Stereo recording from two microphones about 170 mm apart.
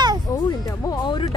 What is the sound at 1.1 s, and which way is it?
Speech, 25° left (ahead or behind).